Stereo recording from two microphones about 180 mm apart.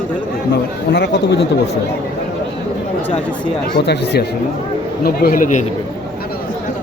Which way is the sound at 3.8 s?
70° left (ahead or behind).